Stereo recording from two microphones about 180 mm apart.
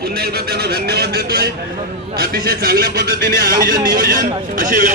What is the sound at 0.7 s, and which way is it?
A man's voice, 60° right (ahead or behind).